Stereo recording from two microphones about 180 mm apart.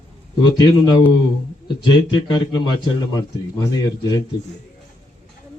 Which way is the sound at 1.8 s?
25° left (ahead or behind).